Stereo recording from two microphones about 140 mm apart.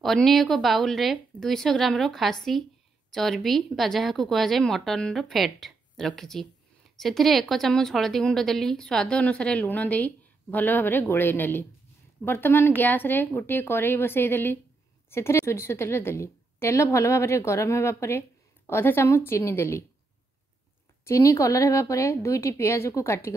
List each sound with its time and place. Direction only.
0.0 s a woman's voice: centre (ahead or behind); by 19.8 s 15° left (ahead or behind)
21.0 s a woman's voice: 20° left (ahead or behind)